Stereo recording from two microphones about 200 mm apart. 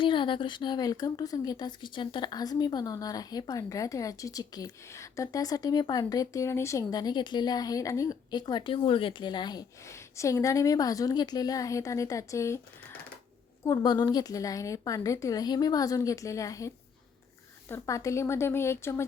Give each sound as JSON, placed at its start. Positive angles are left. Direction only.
{"t": 0.0, "sound": "speech", "side_deg": 25}
{"t": 13.7, "sound": "a woman's voice", "side_deg": 20}